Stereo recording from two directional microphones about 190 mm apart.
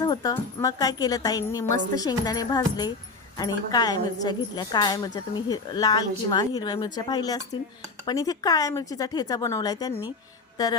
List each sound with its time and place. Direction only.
0.0 s a woman's voice: 20° left (ahead or behind)